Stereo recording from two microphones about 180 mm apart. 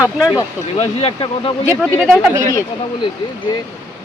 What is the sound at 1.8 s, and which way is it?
Speech, 5° right (ahead or behind).